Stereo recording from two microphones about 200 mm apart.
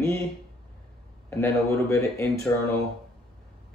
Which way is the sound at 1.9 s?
15° left (ahead or behind).